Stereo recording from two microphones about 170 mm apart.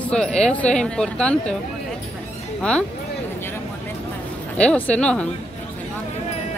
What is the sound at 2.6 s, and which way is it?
Speech, 5° left (ahead or behind).